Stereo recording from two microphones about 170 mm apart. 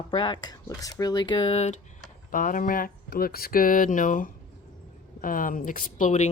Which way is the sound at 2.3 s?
55° left (ahead or behind).